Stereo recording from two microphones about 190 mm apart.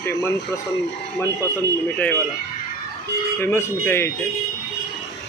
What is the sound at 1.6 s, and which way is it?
Speech, 10° left (ahead or behind).